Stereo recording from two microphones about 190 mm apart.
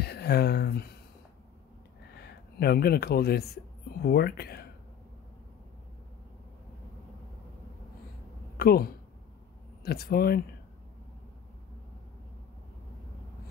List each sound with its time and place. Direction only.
0.0 s speech: 60° left (ahead or behind)
2.2 s speech: 55° left (ahead or behind)
8.5 s speech: 55° left (ahead or behind)